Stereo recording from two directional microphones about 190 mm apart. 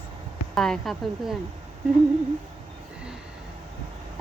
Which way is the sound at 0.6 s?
Centre (ahead or behind).